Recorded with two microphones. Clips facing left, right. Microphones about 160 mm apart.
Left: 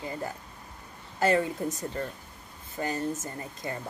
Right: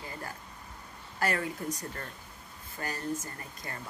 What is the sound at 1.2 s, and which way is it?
Speech, 25° left (ahead or behind).